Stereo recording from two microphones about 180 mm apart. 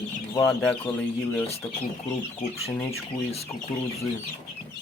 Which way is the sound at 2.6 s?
35° left (ahead or behind).